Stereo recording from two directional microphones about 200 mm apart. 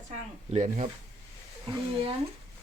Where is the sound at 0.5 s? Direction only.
35° right (ahead or behind).